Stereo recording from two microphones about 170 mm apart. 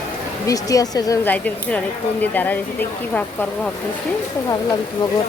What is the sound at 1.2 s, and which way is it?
A woman's voice, 10° left (ahead or behind).